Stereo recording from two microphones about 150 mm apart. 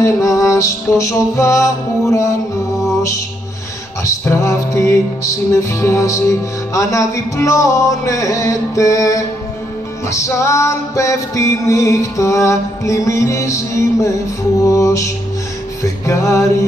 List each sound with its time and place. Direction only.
0.0 s music: 20° left (ahead or behind)
2.8 s mantra: 20° left (ahead or behind)
4.0 s music: 20° left (ahead or behind)
14.7 s music: 20° left (ahead or behind)